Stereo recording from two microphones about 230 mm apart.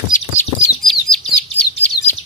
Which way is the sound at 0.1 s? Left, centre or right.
Left.